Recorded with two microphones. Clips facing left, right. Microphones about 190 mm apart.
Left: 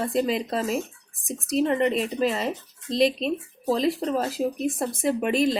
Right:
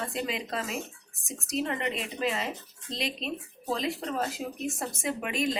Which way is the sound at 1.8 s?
40° left (ahead or behind).